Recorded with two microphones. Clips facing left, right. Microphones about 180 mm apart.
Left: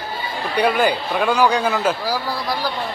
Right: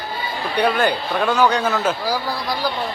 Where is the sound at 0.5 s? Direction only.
5° left (ahead or behind).